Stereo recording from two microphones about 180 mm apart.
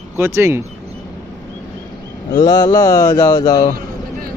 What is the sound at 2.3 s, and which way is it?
Mantra, 20° left (ahead or behind).